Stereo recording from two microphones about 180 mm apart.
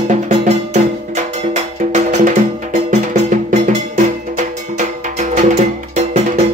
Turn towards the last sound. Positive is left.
turn(degrees=-40)  # may be behind; listen again after turning